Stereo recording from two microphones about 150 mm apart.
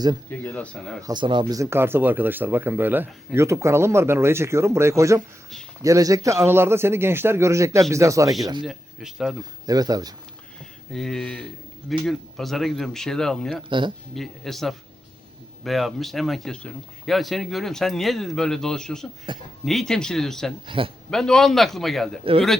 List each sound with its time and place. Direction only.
0.3 s speech: 10° left (ahead or behind)
1.0 s a man's voice: 30° right (ahead or behind)
8.6 s speech: 5° right (ahead or behind)
9.6 s a man's voice: 25° right (ahead or behind)
10.9 s speech: centre (ahead or behind)
13.7 s speech: 35° right (ahead or behind)
14.2 s speech: centre (ahead or behind)
19.3 s speech: 30° right (ahead or behind)
19.6 s speech: centre (ahead or behind)
20.7 s speech: 35° right (ahead or behind)
21.1 s speech: 5° left (ahead or behind)
22.2 s speech: 40° right (ahead or behind)